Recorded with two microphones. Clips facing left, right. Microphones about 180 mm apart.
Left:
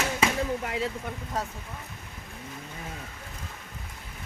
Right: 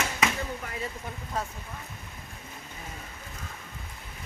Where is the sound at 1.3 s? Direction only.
40° left (ahead or behind).